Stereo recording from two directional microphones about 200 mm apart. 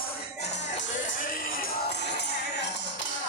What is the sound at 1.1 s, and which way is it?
Music, 45° left (ahead or behind).